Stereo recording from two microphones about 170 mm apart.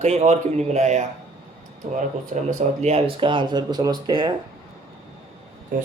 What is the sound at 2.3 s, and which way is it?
A man's voice, 40° right (ahead or behind).